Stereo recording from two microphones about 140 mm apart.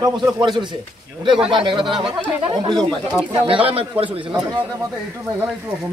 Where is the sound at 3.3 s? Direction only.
40° right (ahead or behind).